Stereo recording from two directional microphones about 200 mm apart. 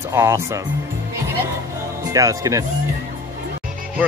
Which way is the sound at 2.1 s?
15° right (ahead or behind).